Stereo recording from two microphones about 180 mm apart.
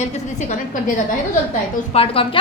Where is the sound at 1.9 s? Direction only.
30° left (ahead or behind).